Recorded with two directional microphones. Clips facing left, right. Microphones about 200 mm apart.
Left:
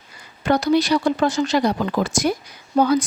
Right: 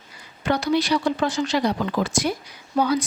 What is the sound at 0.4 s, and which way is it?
A woman's voice, 45° left (ahead or behind).